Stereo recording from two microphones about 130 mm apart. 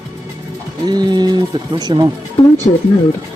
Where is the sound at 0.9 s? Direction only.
35° right (ahead or behind).